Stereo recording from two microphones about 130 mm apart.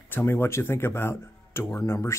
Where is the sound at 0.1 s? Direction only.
20° left (ahead or behind).